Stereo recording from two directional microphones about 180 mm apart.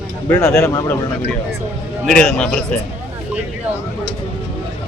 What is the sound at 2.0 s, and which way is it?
Speech, 5° left (ahead or behind).